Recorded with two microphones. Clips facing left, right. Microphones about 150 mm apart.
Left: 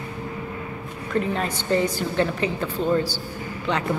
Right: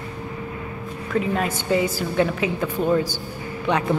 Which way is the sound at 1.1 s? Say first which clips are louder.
Right 2 dB; 5° right (ahead or behind).